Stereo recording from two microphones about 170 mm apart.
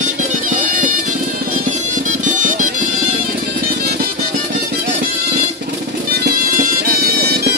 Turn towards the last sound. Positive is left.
turn(degrees=-65)  # may be behind; listen again after turning